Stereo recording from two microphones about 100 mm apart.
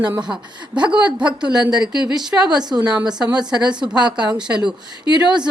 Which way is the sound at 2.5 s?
5° right (ahead or behind).